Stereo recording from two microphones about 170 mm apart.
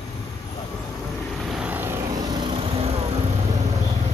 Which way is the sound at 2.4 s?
35° right (ahead or behind).